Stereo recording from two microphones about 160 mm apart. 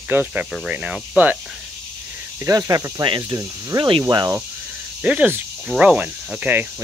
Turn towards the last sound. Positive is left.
turn(degrees=-10)  # may be behind; listen again after turning